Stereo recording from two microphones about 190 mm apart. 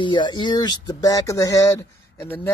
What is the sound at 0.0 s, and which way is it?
Speech, 25° left (ahead or behind).